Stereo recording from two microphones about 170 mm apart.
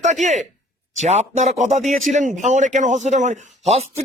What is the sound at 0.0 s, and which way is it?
A man's voice, 45° right (ahead or behind).